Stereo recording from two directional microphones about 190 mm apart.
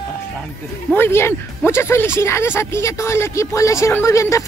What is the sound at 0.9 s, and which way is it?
Speech, 10° left (ahead or behind).